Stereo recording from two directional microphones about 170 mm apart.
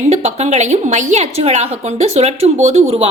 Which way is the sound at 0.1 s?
40° right (ahead or behind).